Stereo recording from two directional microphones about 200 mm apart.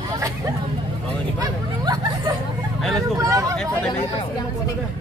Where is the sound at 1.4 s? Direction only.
20° right (ahead or behind).